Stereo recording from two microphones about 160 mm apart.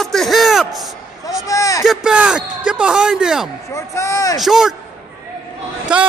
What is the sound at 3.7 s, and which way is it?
Speech, 20° left (ahead or behind).